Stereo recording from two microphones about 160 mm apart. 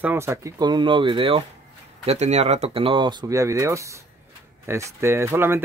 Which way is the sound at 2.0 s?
45° right (ahead or behind).